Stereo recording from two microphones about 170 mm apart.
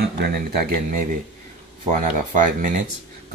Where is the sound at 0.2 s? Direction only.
70° right (ahead or behind).